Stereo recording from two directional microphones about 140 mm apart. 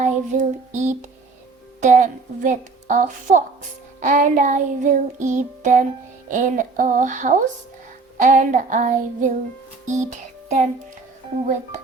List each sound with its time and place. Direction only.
0.0 s child singing: 60° right (ahead or behind)
9.8 s music: 60° right (ahead or behind)